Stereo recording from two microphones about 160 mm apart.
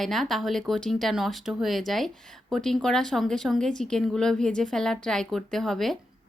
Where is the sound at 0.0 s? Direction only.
Centre (ahead or behind).